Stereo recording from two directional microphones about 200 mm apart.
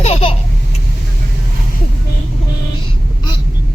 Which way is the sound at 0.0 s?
30° left (ahead or behind).